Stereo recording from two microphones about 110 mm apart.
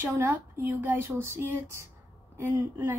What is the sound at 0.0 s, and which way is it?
Speech, 20° right (ahead or behind).